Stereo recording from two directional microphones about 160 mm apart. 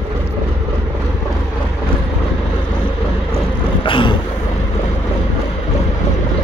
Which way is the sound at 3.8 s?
30° left (ahead or behind).